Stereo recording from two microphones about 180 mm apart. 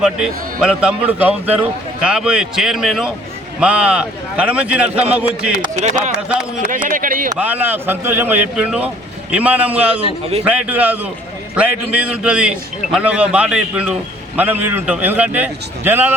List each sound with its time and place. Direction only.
0.0 s a man's voice: 5° right (ahead or behind)
5.7 s speech: 45° right (ahead or behind)
7.3 s a man's voice: 10° right (ahead or behind)